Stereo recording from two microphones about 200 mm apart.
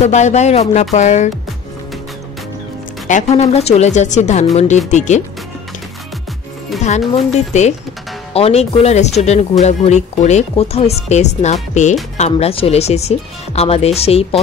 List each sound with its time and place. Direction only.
0.0 s speech: 35° left (ahead or behind)
3.1 s speech: 35° left (ahead or behind)
6.7 s speech: centre (ahead or behind)
7.3 s speech: 35° left (ahead or behind)